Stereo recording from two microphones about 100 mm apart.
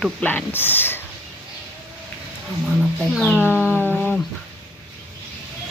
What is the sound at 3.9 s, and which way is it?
Guitar, 20° left (ahead or behind).